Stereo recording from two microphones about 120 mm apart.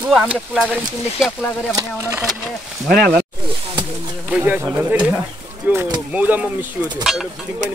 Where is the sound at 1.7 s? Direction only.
20° right (ahead or behind).